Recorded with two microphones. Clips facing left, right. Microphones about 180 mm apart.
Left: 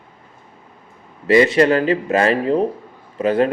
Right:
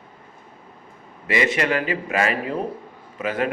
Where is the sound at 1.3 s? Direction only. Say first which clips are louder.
Left 9 dB; 35° left (ahead or behind).